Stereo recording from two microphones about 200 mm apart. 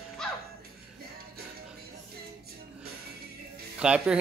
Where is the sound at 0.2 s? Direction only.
5° left (ahead or behind).